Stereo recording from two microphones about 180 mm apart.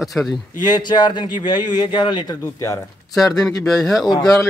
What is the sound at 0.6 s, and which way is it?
A man's voice, 25° left (ahead or behind).